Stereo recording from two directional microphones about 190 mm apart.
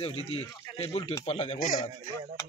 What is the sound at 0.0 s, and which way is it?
Speech, 30° left (ahead or behind).